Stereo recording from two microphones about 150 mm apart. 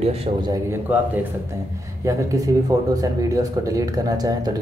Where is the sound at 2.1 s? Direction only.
20° right (ahead or behind).